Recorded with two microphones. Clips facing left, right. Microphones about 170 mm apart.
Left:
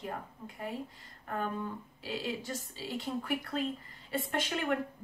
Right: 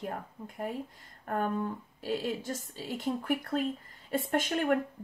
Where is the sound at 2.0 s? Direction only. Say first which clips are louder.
Right 5 dB; 50° right (ahead or behind).